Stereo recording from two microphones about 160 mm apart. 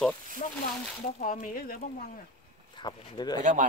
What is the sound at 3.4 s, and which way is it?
Speech, 50° right (ahead or behind).